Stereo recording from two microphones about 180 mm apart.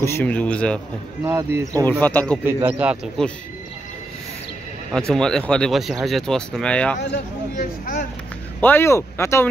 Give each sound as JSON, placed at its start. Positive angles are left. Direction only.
{"t": 0.0, "sound": "speech", "side_deg": 10}
{"t": 1.2, "sound": "speech", "side_deg": -15}
{"t": 1.9, "sound": "speech", "side_deg": 10}
{"t": 2.4, "sound": "speech", "side_deg": -10}
{"t": 3.2, "sound": "speech", "side_deg": 5}
{"t": 5.1, "sound": "speech", "side_deg": 5}
{"t": 7.5, "sound": "speech", "side_deg": 50}
{"t": 8.5, "sound": "speech", "side_deg": 10}